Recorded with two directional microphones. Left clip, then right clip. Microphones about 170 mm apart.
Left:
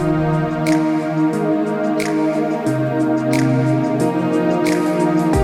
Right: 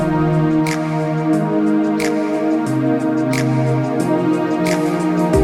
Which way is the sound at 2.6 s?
Centre (ahead or behind).